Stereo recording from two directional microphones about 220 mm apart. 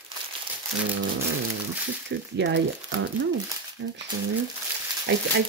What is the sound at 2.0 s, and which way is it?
Speech, 50° right (ahead or behind).